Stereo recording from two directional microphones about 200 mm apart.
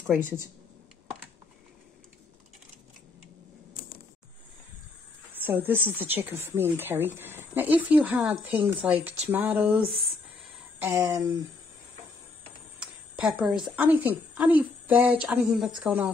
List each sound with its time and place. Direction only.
5.3 s speech: 10° right (ahead or behind)
10.8 s speech: 15° right (ahead or behind)
12.7 s a woman's voice: 5° right (ahead or behind)